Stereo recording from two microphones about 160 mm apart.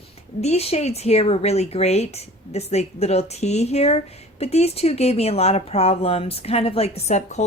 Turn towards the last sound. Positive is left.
turn(degrees=45)  # may be behind; listen again after turning